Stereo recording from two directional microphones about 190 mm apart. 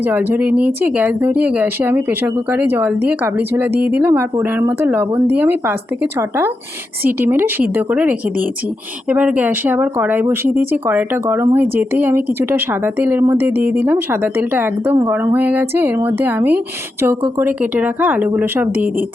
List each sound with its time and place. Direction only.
0.0 s speech: 10° right (ahead or behind)